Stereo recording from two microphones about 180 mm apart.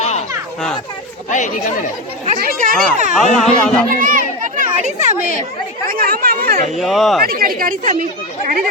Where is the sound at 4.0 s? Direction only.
45° right (ahead or behind).